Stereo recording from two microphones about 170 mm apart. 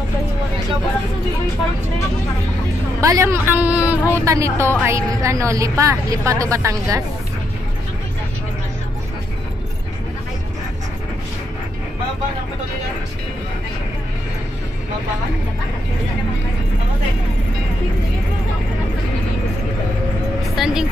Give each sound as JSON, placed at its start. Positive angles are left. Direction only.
{"t": 3.0, "sound": "a woman's voice", "side_deg": -20}
{"t": 20.5, "sound": "vehicle", "side_deg": -5}